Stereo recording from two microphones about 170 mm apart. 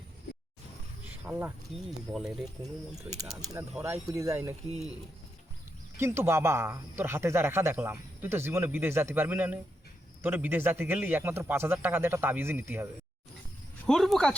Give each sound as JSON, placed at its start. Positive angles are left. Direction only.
{"t": 1.0, "sound": "a sound", "side_deg": -10}
{"t": 2.1, "sound": "speech", "side_deg": 0}
{"t": 3.5, "sound": "speech", "side_deg": -15}
{"t": 6.0, "sound": "speech", "side_deg": -15}
{"t": 13.8, "sound": "speech", "side_deg": 0}